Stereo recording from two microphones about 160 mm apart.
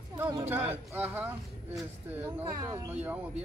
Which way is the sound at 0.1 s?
25° right (ahead or behind).